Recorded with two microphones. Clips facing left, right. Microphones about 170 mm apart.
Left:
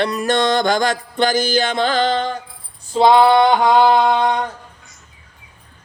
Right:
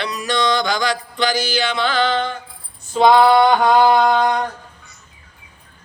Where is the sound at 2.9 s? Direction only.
25° left (ahead or behind).